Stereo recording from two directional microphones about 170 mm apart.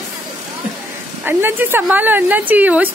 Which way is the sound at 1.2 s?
10° right (ahead or behind).